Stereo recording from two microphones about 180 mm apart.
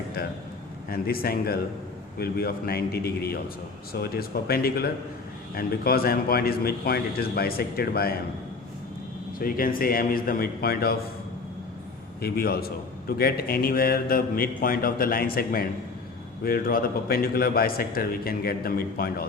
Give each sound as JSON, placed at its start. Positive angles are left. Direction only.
{"t": 0.9, "sound": "a man's voice", "side_deg": 55}
{"t": 9.4, "sound": "a man's voice", "side_deg": 55}
{"t": 12.2, "sound": "a man's voice", "side_deg": 60}